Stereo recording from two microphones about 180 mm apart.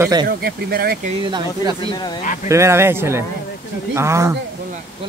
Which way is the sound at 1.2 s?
25° right (ahead or behind).